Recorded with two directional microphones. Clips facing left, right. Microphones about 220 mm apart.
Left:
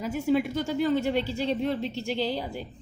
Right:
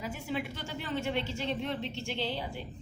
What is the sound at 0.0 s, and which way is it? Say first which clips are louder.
A woman's voice: left 11 dB; 45° left (ahead or behind).